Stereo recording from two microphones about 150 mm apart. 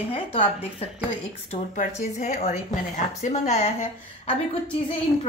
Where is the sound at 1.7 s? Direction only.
50° left (ahead or behind).